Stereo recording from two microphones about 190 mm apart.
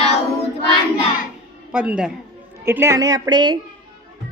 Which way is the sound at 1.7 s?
5° right (ahead or behind).